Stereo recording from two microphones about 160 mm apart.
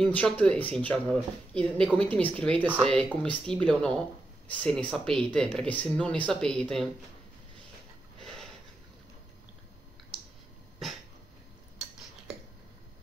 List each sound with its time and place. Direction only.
0.0 s speech: 10° left (ahead or behind)
8.2 s a sound: centre (ahead or behind)
10.8 s dog: centre (ahead or behind)